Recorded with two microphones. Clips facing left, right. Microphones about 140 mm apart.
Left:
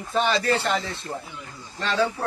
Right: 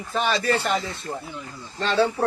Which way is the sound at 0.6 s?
20° right (ahead or behind).